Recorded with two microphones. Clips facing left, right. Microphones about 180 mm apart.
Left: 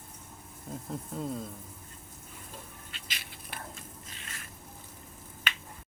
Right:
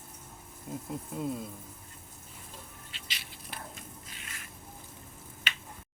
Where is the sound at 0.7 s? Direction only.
10° right (ahead or behind).